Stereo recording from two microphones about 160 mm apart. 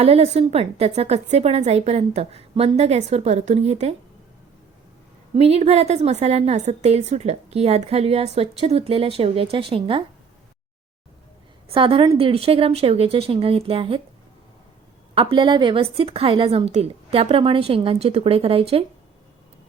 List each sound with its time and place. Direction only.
0.0 s a woman's voice: 40° right (ahead or behind)
5.3 s a woman's voice: 40° right (ahead or behind)
11.7 s a woman's voice: 35° right (ahead or behind)
15.1 s a woman's voice: 35° right (ahead or behind)